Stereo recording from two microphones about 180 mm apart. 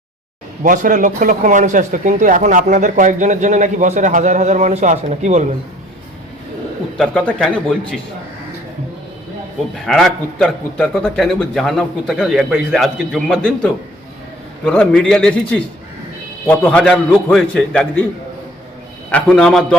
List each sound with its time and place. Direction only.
0.6 s a man's voice: 50° right (ahead or behind)
6.9 s a man's voice: 5° left (ahead or behind)
9.8 s a man's voice: centre (ahead or behind)
19.1 s a man's voice: 5° left (ahead or behind)